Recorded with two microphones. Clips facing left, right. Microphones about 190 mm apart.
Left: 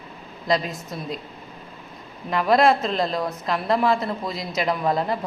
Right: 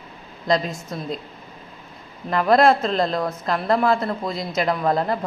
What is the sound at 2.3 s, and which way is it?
A woman's voice, centre (ahead or behind).